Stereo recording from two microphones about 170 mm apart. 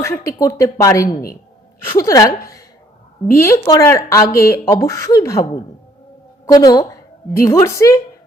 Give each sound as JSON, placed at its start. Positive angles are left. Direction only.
{"t": 0.0, "sound": "a woman's voice", "side_deg": 15}
{"t": 6.4, "sound": "a woman's voice", "side_deg": 20}